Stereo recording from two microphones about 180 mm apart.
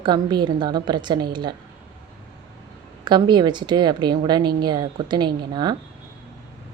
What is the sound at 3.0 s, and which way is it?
A woman's voice, 25° right (ahead or behind).